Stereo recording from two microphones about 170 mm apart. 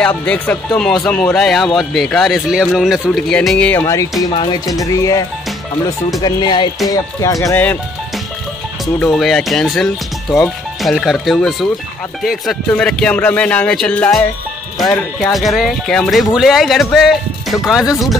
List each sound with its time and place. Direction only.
0.2 s speech: 10° left (ahead or behind)
3.8 s speech: 20° left (ahead or behind)
6.2 s speech: 25° left (ahead or behind)
9.0 s speech: centre (ahead or behind)